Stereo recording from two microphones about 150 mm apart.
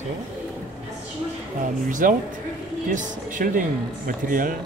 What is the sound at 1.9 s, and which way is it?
Speech, 60° right (ahead or behind).